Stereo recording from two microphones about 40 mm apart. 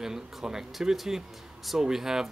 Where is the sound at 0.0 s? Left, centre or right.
Centre.